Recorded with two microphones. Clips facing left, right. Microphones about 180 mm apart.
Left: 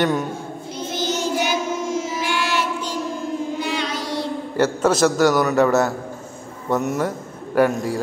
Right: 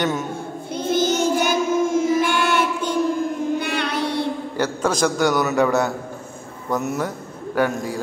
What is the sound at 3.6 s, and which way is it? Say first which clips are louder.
Music: right 2 dB; 60° right (ahead or behind).